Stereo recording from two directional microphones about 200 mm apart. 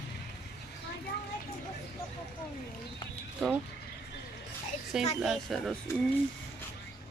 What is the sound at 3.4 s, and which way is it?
Speech, 5° left (ahead or behind).